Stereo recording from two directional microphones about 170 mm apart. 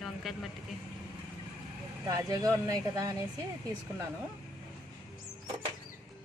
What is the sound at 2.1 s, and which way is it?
Speech, 20° right (ahead or behind).